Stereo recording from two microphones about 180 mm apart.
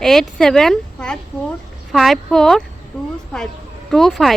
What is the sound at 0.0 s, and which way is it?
Speech, centre (ahead or behind).